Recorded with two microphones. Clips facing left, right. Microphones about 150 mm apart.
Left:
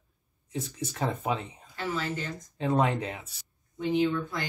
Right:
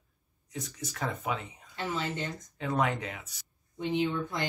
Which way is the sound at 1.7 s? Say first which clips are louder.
Left 1 dB; 25° right (ahead or behind).